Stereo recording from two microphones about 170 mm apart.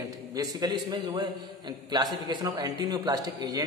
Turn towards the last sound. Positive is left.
turn(degrees=-20)  # may be behind; listen again after turning